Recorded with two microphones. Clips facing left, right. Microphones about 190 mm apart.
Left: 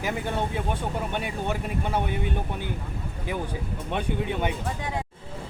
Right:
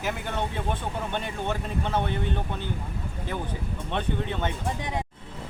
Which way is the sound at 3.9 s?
10° left (ahead or behind).